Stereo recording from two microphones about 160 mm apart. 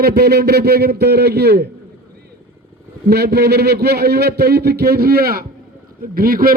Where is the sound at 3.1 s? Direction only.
90° right.